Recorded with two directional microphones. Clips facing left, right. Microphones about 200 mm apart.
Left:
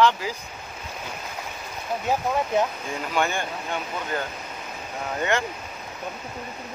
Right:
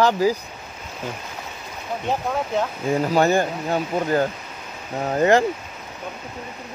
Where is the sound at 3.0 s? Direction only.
40° right (ahead or behind).